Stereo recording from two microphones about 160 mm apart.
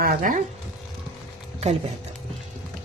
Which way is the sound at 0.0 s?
60° right (ahead or behind).